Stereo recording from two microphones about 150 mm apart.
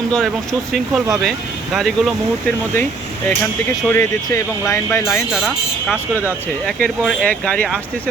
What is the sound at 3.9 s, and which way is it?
Speech, 20° left (ahead or behind).